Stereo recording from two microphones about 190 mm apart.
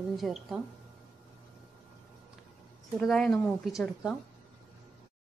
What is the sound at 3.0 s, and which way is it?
A woman's voice, 5° left (ahead or behind).